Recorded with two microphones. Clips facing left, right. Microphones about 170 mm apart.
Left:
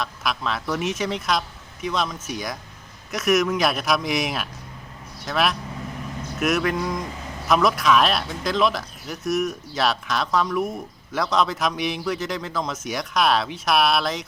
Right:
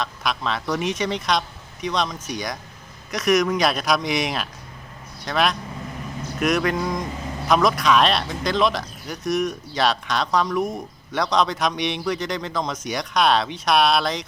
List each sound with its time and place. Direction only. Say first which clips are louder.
0.0 s speech: right 1 dB; centre (ahead or behind)